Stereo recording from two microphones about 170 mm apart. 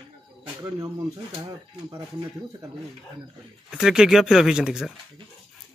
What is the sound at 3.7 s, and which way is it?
Speech, 5° right (ahead or behind).